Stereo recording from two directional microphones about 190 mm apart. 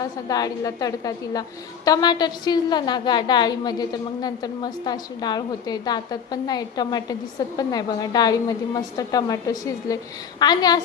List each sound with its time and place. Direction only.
0.0 s a woman's voice: 20° left (ahead or behind)